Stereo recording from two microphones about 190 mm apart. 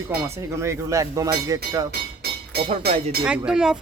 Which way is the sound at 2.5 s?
55° right (ahead or behind).